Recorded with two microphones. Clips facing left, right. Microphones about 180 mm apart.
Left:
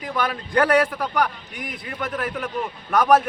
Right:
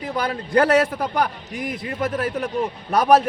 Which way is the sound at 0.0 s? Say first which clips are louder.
Right 1 dB; 25° right (ahead or behind).